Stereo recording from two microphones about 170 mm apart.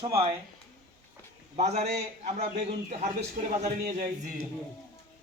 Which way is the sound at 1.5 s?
40° right (ahead or behind).